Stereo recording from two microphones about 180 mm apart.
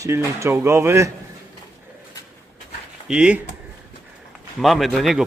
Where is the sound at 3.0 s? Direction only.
5° right (ahead or behind).